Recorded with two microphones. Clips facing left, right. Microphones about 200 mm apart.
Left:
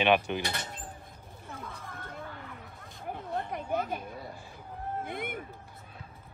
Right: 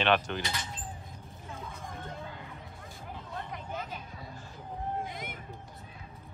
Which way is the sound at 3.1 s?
55° left (ahead or behind).